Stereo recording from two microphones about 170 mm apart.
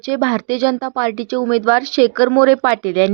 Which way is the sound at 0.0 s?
25° right (ahead or behind).